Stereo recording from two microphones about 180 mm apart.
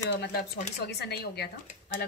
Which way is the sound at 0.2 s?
65° left (ahead or behind).